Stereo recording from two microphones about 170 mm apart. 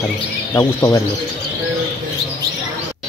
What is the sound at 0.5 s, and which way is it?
Speech, 15° left (ahead or behind).